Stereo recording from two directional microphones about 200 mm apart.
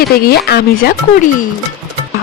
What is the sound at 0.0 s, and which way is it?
Speech, 50° left (ahead or behind).